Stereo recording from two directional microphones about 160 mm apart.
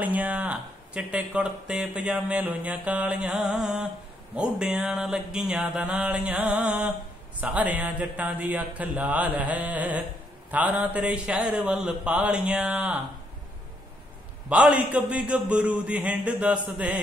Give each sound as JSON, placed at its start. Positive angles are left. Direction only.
{"t": 0.0, "sound": "speech", "side_deg": -10}
{"t": 14.5, "sound": "speech", "side_deg": -10}